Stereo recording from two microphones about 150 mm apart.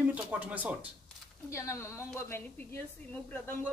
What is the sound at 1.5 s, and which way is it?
Speech, 20° left (ahead or behind).